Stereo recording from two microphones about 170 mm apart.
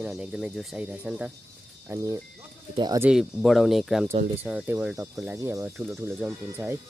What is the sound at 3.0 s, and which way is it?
Speech, 5° right (ahead or behind).